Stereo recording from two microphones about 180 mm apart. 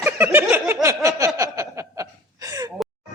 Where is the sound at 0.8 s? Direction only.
15° right (ahead or behind).